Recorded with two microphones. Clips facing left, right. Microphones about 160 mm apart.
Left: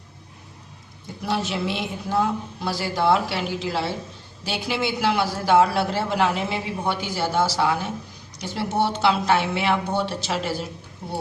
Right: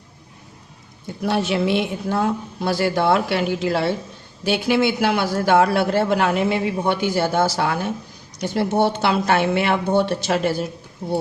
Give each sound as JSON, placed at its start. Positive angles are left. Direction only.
{"t": 1.3, "sound": "a man's voice", "side_deg": -60}